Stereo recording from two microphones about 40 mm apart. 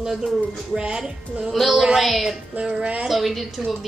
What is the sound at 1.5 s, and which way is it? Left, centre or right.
Speech, centre.